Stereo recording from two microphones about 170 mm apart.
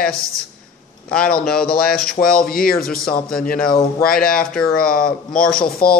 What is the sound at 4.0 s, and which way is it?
Speech, 60° left (ahead or behind).